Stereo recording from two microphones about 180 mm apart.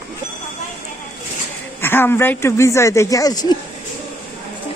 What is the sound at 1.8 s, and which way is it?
Speech, 10° left (ahead or behind).